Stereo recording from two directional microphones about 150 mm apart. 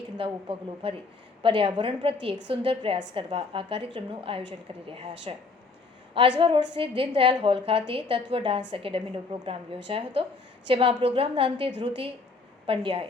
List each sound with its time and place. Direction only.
0.2 s a woman's voice: 35° right (ahead or behind)
6.4 s a woman's voice: 35° right (ahead or behind)